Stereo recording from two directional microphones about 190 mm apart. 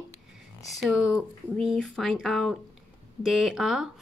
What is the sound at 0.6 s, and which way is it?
Speech, centre (ahead or behind).